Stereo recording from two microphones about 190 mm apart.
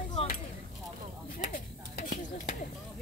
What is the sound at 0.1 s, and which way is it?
Chop, 35° left (ahead or behind).